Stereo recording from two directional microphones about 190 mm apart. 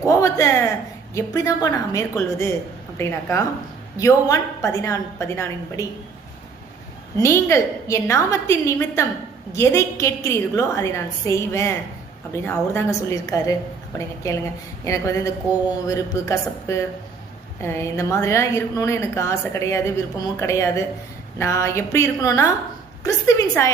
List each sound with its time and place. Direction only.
0.0 s a woman's voice: 15° left (ahead or behind)
7.2 s a woman's voice: 15° left (ahead or behind)